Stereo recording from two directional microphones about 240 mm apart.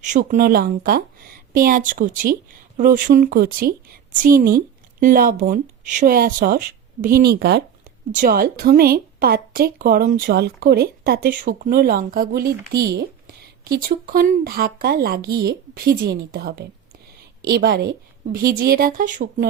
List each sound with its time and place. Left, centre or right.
0.0 s a woman's voice: right